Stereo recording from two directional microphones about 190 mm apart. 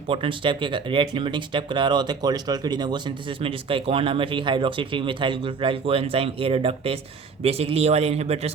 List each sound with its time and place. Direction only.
0.1 s a man's voice: 25° right (ahead or behind)